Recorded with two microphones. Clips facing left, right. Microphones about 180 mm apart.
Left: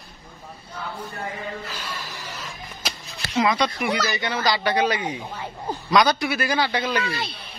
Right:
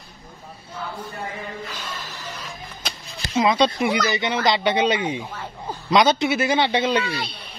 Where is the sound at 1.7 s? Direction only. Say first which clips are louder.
Even; 10° left (ahead or behind).